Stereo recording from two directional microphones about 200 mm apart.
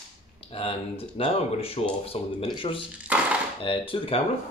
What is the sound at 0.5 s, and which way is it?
Speech, 30° left (ahead or behind).